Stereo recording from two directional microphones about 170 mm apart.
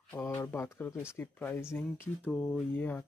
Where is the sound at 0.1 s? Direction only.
15° left (ahead or behind).